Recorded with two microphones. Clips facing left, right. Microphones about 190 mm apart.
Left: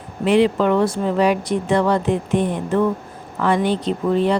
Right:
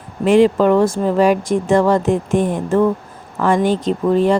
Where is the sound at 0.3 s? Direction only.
45° right (ahead or behind).